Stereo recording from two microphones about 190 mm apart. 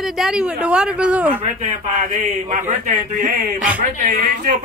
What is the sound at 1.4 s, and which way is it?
Speech, 40° right (ahead or behind).